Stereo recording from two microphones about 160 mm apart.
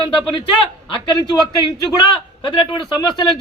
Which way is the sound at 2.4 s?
30° left (ahead or behind).